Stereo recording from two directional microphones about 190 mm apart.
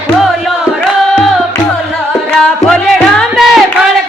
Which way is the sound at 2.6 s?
5° left (ahead or behind).